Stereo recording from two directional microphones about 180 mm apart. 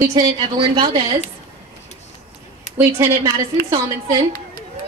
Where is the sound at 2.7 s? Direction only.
15° right (ahead or behind).